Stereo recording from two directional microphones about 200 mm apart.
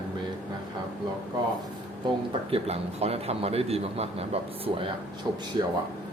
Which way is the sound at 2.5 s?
30° right (ahead or behind).